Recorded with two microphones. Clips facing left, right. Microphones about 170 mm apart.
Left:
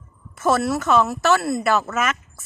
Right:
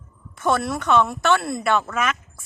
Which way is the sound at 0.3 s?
5° left (ahead or behind).